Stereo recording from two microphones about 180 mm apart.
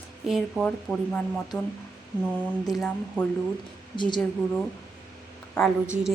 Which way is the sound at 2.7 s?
Centre (ahead or behind).